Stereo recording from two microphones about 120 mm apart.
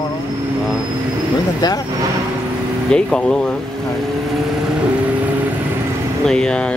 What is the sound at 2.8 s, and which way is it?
Speech, 5° left (ahead or behind).